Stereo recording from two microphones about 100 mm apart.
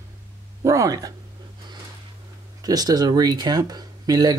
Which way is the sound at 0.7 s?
35° right (ahead or behind).